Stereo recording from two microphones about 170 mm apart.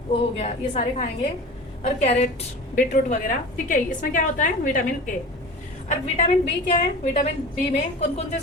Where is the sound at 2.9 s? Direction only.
50° left (ahead or behind).